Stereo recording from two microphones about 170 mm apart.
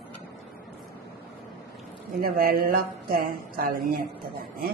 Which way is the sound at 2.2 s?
60° right (ahead or behind).